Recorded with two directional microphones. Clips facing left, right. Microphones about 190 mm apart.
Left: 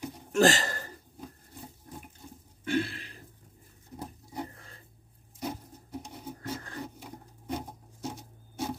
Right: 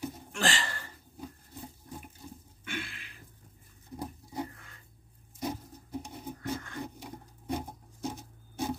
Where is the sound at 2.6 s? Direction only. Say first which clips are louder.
Left 11 dB; 35° left (ahead or behind).